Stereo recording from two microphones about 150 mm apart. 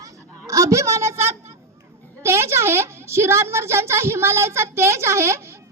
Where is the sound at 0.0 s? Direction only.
20° right (ahead or behind).